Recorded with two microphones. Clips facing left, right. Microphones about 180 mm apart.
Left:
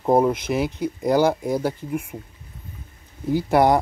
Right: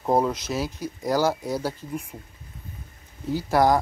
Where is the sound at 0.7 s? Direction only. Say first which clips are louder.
Left 7 dB; 60° left (ahead or behind).